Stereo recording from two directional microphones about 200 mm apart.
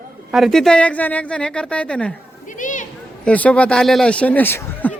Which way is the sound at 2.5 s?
40° left (ahead or behind).